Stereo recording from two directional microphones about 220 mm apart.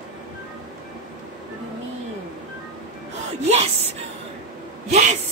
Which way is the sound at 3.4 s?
30° right (ahead or behind).